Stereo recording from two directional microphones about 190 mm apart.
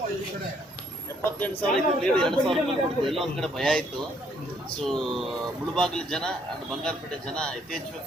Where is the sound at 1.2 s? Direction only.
10° left (ahead or behind).